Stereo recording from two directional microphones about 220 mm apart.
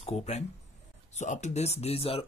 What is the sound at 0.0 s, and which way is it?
Speech, 30° left (ahead or behind).